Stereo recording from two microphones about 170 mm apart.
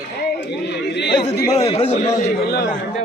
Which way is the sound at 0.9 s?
90° left.